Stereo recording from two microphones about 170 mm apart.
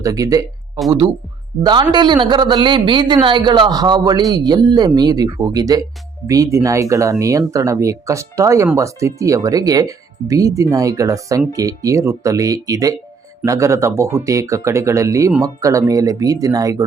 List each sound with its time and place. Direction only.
0.0 s speech: 20° right (ahead or behind)
1.6 s speech: 25° right (ahead or behind)